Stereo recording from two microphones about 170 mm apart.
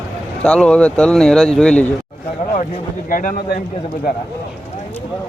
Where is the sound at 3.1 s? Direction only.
55° left (ahead or behind).